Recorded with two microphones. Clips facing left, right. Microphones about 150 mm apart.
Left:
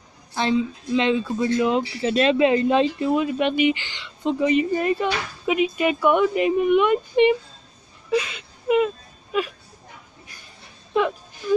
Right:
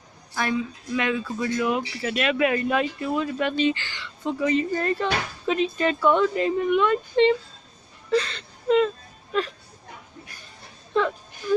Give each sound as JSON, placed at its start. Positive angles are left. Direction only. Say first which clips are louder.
{"t": 0.3, "sound": "speech", "louder": "left 4 dB", "side_deg": 25}
{"t": 8.1, "sound": "whimper", "louder": "even", "side_deg": 10}
{"t": 10.9, "sound": "a sound", "louder": "left 2 dB", "side_deg": 15}